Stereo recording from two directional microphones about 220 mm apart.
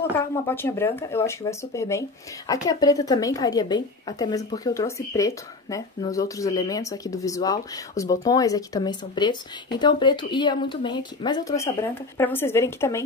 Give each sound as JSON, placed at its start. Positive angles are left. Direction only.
{"t": 0.2, "sound": "speech", "side_deg": 10}